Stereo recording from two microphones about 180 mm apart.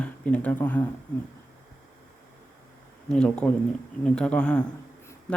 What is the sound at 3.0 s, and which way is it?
Speech, 5° left (ahead or behind).